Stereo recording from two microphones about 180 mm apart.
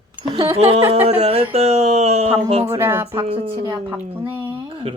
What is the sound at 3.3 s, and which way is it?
Speech, 25° right (ahead or behind).